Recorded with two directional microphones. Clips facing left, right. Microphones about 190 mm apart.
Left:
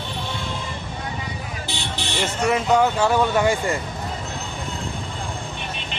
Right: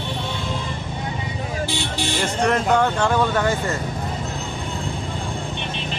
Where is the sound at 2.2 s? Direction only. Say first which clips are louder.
Even; 5° left (ahead or behind).